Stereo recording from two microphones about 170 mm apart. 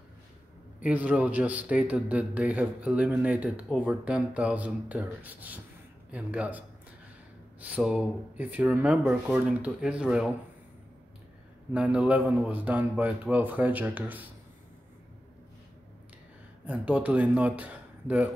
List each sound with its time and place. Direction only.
0.7 s a man's voice: 10° right (ahead or behind)
7.6 s a man's voice: 5° right (ahead or behind)
11.7 s a man's voice: 5° right (ahead or behind)
16.6 s speech: 10° right (ahead or behind)